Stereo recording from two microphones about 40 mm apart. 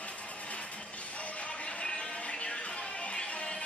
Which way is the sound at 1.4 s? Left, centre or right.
Left.